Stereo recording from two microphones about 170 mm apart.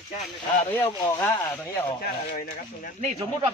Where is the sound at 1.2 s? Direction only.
15° left (ahead or behind).